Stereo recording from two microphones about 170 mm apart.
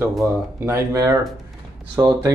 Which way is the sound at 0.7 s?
15° right (ahead or behind).